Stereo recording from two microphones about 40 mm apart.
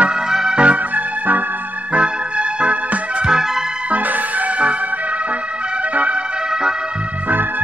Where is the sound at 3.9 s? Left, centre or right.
Right.